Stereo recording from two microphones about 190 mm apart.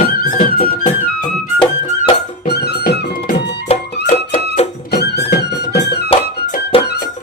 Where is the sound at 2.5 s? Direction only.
60° left (ahead or behind).